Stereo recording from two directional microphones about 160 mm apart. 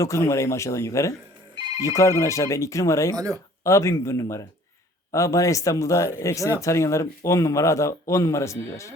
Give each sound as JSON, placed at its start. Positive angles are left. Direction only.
{"t": 0.0, "sound": "speech", "side_deg": 20}